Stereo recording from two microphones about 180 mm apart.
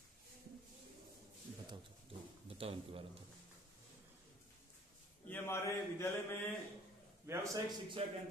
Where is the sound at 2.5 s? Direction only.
30° right (ahead or behind).